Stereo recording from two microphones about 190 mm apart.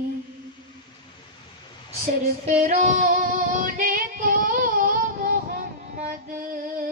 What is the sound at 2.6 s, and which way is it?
Female singing, 40° right (ahead or behind).